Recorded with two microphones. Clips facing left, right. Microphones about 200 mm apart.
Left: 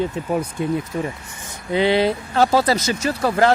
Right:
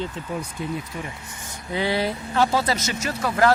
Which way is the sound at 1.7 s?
20° left (ahead or behind).